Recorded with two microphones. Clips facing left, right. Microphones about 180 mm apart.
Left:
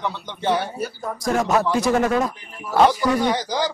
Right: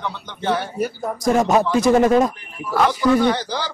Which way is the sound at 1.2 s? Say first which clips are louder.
Right 3 dB; 20° right (ahead or behind).